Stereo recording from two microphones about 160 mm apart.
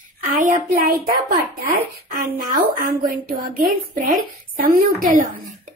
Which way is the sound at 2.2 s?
60° right (ahead or behind).